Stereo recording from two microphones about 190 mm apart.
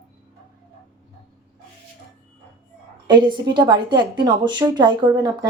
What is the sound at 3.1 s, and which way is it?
Speech, 25° right (ahead or behind).